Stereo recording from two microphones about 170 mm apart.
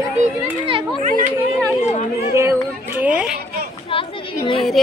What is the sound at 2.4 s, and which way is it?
Speech, 15° right (ahead or behind).